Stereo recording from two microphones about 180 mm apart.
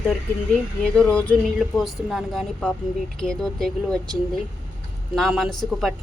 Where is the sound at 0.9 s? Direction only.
5° left (ahead or behind).